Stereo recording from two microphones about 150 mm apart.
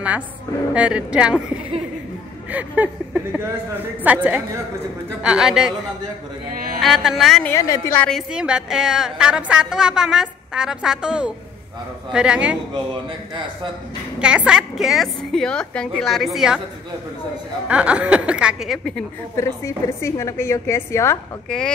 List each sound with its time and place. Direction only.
0.7 s a woman's voice: 10° right (ahead or behind)
6.8 s a woman's voice: centre (ahead or behind)
7.4 s a woman's voice: 20° left (ahead or behind)
7.9 s a woman's voice: 10° left (ahead or behind)
8.3 s a woman's voice: 5° right (ahead or behind)
14.2 s a woman's voice: 5° right (ahead or behind)
17.6 s a woman's voice: 10° right (ahead or behind)
19.3 s a woman's voice: 20° left (ahead or behind)
21.5 s a woman's voice: 5° left (ahead or behind)